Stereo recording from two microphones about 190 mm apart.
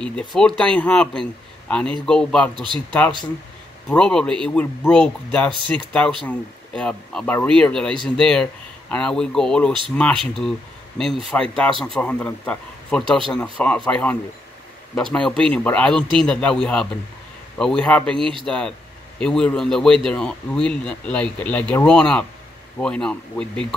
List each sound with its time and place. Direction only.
0.0 s speech: 5° left (ahead or behind)
2.5 s speech: 25° right (ahead or behind)
3.9 s speech: 5° left (ahead or behind)
11.3 s speech: 5° left (ahead or behind)
15.1 s speech: 5° left (ahead or behind)